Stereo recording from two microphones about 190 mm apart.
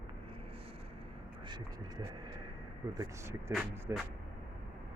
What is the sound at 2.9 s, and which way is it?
Speech, 20° right (ahead or behind).